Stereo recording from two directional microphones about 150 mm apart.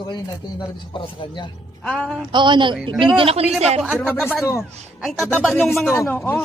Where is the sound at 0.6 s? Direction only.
35° left (ahead or behind).